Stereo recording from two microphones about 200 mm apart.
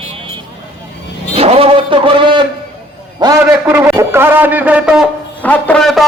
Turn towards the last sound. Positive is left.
turn(degrees=0)  # may be behind; listen again after turning